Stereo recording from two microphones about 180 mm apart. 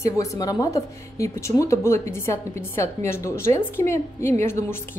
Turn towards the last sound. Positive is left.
turn(degrees=15)  # may be behind; listen again after turning